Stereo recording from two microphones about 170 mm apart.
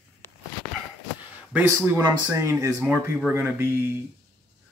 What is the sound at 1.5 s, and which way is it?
Speech, 10° right (ahead or behind).